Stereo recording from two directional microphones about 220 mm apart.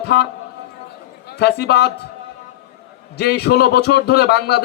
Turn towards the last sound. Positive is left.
turn(degrees=50)  # may be behind; listen again after turning